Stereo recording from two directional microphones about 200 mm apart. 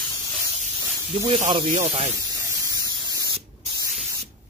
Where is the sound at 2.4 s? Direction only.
15° right (ahead or behind).